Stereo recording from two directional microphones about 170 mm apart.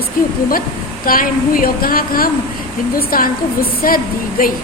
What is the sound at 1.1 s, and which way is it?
A woman's voice, 55° left (ahead or behind).